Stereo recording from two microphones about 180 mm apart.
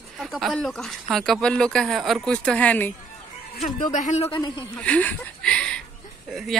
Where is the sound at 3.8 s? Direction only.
40° left (ahead or behind).